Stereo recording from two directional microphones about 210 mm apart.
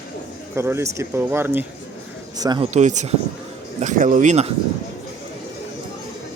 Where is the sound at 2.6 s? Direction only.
35° right (ahead or behind).